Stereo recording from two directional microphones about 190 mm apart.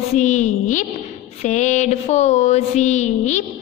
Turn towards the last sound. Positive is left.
turn(degrees=40)  # may be behind; listen again after turning